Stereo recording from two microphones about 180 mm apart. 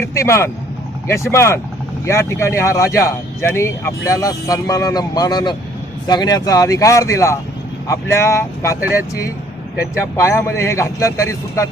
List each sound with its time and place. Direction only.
0.0 s speech: 15° left (ahead or behind)
10.2 s speech: 15° left (ahead or behind)